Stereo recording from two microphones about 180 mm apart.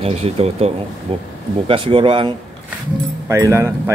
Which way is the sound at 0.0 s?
35° right (ahead or behind).